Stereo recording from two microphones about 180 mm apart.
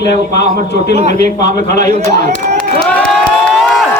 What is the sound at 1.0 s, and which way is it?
A man's voice, 40° right (ahead or behind).